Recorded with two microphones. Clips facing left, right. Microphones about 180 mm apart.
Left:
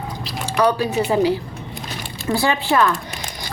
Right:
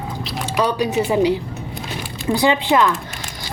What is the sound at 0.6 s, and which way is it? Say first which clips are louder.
Speech: left 1 dB; 20° right (ahead or behind).